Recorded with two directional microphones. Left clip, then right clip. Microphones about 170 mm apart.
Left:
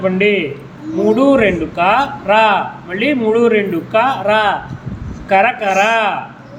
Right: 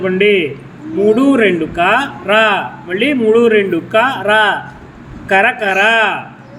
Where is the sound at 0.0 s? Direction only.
20° right (ahead or behind).